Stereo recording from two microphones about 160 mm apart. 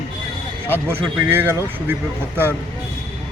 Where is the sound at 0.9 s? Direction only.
15° right (ahead or behind).